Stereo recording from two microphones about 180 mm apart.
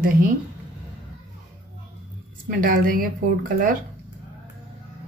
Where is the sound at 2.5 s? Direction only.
50° right (ahead or behind).